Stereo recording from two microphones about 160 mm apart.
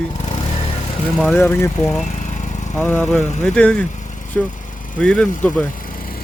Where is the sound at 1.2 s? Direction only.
10° left (ahead or behind).